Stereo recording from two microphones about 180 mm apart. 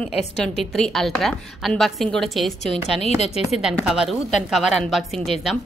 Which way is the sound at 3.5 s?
Centre (ahead or behind).